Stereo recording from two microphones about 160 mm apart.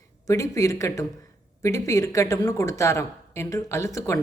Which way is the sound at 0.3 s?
20° left (ahead or behind).